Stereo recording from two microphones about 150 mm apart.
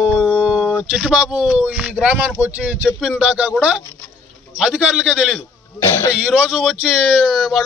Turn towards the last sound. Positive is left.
turn(degrees=0)  # may be behind; listen again after turning